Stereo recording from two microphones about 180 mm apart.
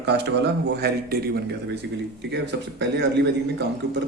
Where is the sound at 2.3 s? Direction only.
75° right (ahead or behind).